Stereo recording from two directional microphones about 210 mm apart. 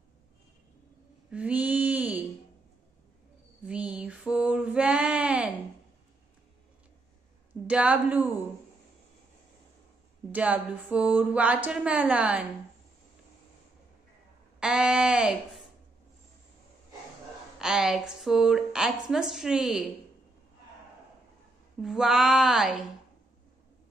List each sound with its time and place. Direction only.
1.3 s female singing: 5° right (ahead or behind)
3.6 s female singing: 5° right (ahead or behind)
7.6 s a woman's voice: 5° right (ahead or behind)
10.3 s speech: 5° right (ahead or behind)
14.6 s a woman's voice: 5° right (ahead or behind)
17.6 s a woman's voice: 5° right (ahead or behind)
21.8 s a woman's voice: centre (ahead or behind)